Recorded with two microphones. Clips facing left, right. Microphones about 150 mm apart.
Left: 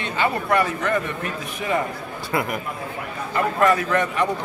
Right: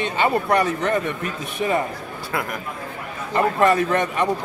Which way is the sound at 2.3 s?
5° left (ahead or behind).